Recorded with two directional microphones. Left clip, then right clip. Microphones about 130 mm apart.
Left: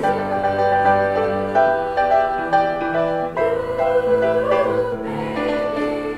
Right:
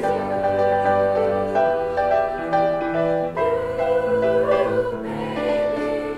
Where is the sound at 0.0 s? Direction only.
30° left (ahead or behind).